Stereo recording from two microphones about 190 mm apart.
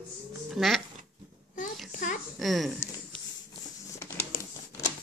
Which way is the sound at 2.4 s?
Centre (ahead or behind).